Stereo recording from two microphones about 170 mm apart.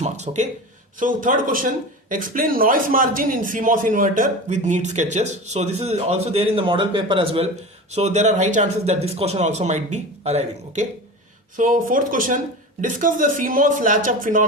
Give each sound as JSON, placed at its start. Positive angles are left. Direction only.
{"t": 0.0, "sound": "a sound", "side_deg": -40}
{"t": 0.9, "sound": "speech", "side_deg": -50}
{"t": 7.9, "sound": "speech", "side_deg": -40}
{"t": 11.5, "sound": "speech", "side_deg": -50}